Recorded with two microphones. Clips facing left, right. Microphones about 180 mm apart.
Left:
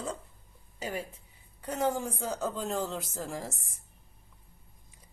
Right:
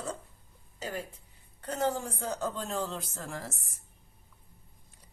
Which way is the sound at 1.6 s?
10° left (ahead or behind).